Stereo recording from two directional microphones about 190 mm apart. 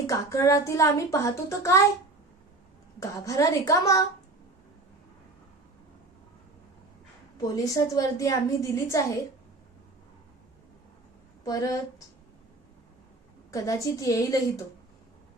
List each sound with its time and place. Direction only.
0.1 s speech: 15° left (ahead or behind)
3.0 s speech: 15° left (ahead or behind)
7.4 s speech: 20° left (ahead or behind)
11.4 s speech: 15° left (ahead or behind)
13.5 s speech: 15° left (ahead or behind)